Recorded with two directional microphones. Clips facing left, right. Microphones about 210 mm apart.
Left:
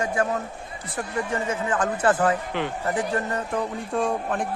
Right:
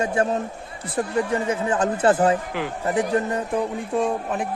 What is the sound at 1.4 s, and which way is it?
Speech, 25° right (ahead or behind).